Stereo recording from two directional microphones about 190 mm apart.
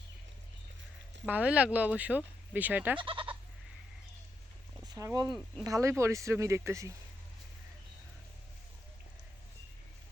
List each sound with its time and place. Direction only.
1.3 s speech: 5° right (ahead or behind)
3.0 s speech: 25° right (ahead or behind)
4.9 s speech: 20° right (ahead or behind)